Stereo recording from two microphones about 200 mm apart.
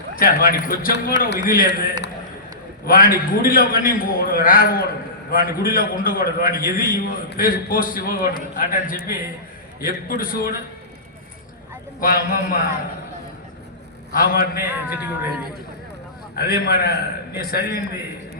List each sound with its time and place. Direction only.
0.2 s a man's voice: 45° left (ahead or behind)
2.8 s a man's voice: 45° left (ahead or behind)
11.9 s a man's voice: 45° left (ahead or behind)
14.1 s a man's voice: 45° left (ahead or behind)
14.8 s speech: 10° right (ahead or behind)
16.3 s a man's voice: 50° left (ahead or behind)